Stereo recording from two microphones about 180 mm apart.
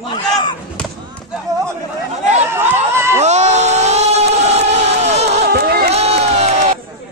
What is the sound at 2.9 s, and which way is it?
Crowd, 15° right (ahead or behind).